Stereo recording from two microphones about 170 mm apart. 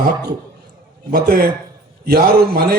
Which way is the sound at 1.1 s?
65° right (ahead or behind).